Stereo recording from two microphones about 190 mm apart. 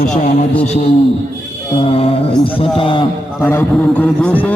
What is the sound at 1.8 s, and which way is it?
A man's voice, 30° left (ahead or behind).